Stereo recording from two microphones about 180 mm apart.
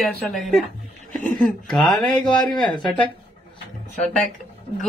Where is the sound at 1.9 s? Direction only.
25° left (ahead or behind).